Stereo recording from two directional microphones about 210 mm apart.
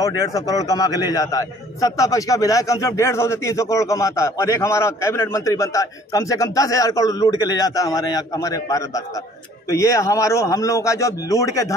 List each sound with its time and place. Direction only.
0.3 s a man's voice: 15° left (ahead or behind)